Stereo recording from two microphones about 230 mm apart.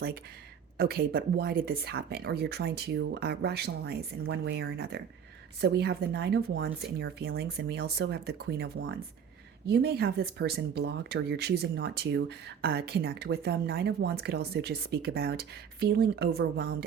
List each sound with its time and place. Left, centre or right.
0.8 s speech: right